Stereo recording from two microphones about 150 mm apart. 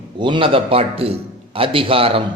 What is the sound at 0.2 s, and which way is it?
A man's voice, 35° right (ahead or behind).